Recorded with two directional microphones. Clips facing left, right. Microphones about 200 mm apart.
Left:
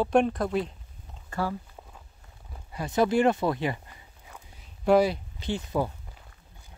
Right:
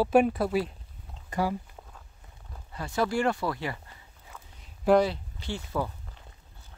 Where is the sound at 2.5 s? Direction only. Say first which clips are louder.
Left 3 dB; 15° left (ahead or behind).